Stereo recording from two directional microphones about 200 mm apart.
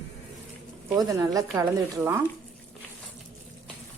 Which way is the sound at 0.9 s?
15° right (ahead or behind).